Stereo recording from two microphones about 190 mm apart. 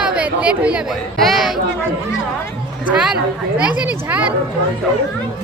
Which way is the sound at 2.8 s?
5° right (ahead or behind).